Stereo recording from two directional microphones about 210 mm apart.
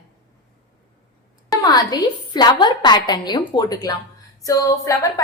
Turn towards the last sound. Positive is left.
turn(degrees=15)  # may be behind; listen again after turning